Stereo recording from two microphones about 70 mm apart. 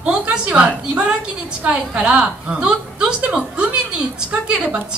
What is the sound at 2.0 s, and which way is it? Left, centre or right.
A woman's voice, centre.